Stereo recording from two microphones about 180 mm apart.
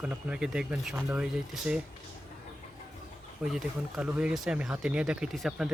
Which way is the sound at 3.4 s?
Centre (ahead or behind).